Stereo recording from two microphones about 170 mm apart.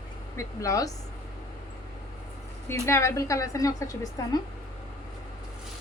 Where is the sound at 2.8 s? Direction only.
15° left (ahead or behind).